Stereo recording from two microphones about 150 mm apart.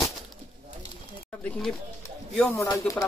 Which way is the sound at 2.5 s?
20° left (ahead or behind).